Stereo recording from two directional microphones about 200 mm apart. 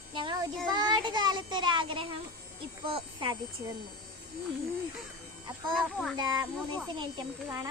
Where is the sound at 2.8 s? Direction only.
25° right (ahead or behind).